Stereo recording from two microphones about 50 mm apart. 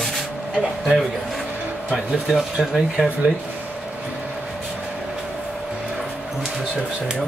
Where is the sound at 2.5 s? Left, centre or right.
Centre.